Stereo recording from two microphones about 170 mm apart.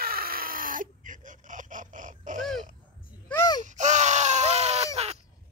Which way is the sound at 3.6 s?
45° right (ahead or behind).